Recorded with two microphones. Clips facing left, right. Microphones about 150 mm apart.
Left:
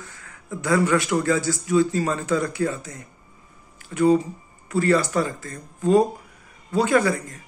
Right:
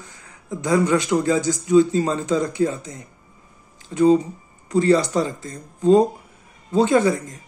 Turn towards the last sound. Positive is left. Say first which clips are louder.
# right 2 dB
turn(degrees=-20)  # may be behind; listen again after turning